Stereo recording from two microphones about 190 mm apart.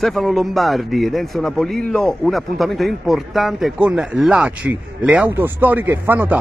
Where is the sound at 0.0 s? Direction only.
Centre (ahead or behind).